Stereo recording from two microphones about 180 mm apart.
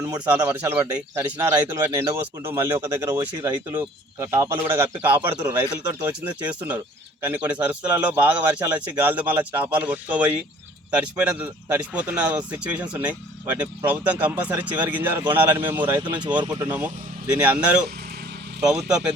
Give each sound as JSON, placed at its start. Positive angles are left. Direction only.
{"t": 0.3, "sound": "speech", "side_deg": -10}